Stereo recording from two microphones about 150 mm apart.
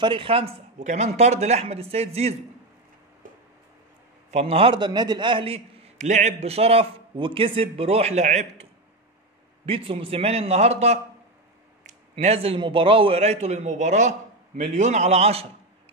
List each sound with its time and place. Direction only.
0.0 s a man's voice: 35° right (ahead or behind)
4.3 s a man's voice: 45° right (ahead or behind)
5.9 s a man's voice: 50° right (ahead or behind)
9.7 s a man's voice: 40° right (ahead or behind)